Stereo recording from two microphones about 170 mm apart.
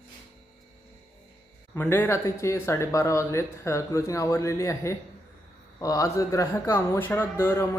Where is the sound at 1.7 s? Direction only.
10° left (ahead or behind).